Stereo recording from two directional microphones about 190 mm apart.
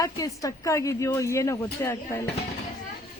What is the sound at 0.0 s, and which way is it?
Speech, 15° left (ahead or behind).